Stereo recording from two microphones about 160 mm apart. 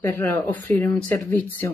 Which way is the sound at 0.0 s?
10° left (ahead or behind).